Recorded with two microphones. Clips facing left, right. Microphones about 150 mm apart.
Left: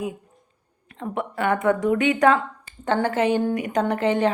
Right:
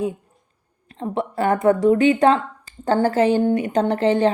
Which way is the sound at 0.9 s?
30° right (ahead or behind).